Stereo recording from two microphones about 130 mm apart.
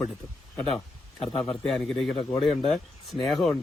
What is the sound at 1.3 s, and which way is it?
Speech, 45° left (ahead or behind).